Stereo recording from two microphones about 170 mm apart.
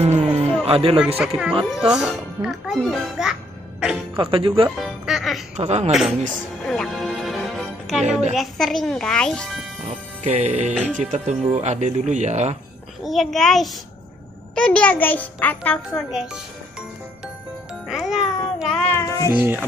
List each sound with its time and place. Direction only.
0.0 s a sound: 35° right (ahead or behind)
0.7 s speech: 35° right (ahead or behind)
0.9 s a child's voice: 5° right (ahead or behind)
4.2 s music: 30° right (ahead or behind)
4.7 s music: centre (ahead or behind)
5.6 s music: 40° right (ahead or behind)
5.9 s a child's voice: 5° right (ahead or behind)
6.6 s music: centre (ahead or behind)
8.4 s a child's voice: centre (ahead or behind)
9.8 s music: 40° right (ahead or behind)
11.0 s speech: 45° right (ahead or behind)
13.0 s a child's voice: centre (ahead or behind)
17.8 s a child's voice: 5° right (ahead or behind); by 19.3 s 15° left (ahead or behind)
19.3 s speech: 10° right (ahead or behind)